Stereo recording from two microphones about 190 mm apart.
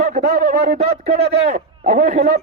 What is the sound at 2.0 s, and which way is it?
Speech, 40° right (ahead or behind).